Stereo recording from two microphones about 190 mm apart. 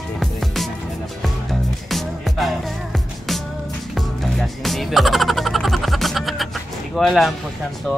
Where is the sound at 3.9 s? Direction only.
Centre (ahead or behind).